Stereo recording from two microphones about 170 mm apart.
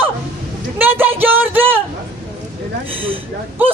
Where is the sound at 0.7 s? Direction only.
10° right (ahead or behind).